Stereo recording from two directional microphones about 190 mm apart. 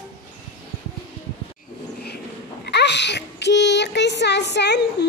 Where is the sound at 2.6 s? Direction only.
65° left (ahead or behind).